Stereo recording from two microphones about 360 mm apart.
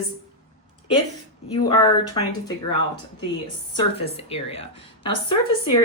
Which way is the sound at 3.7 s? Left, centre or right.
Centre.